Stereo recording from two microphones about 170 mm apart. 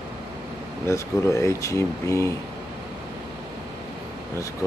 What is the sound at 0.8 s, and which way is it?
Speech, 20° left (ahead or behind).